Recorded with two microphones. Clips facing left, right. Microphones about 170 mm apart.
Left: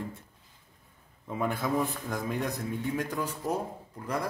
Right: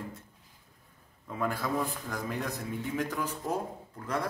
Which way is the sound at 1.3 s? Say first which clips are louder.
Left 2 dB; 20° left (ahead or behind).